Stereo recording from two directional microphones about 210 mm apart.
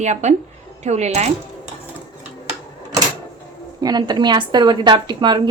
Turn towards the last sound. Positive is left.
turn(degrees=-20)  # may be behind; listen again after turning